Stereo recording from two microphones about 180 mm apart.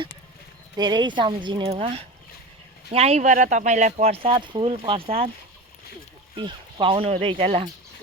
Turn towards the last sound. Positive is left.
turn(degrees=-40)  # may be behind; listen again after turning